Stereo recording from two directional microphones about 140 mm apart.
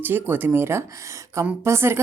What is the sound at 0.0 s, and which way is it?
A woman's voice, 15° right (ahead or behind).